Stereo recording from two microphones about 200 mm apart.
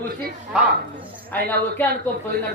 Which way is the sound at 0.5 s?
5° right (ahead or behind).